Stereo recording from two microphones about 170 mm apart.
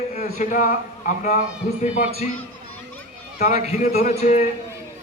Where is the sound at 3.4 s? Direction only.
40° left (ahead or behind).